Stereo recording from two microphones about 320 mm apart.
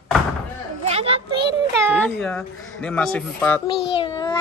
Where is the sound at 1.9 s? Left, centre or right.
Centre.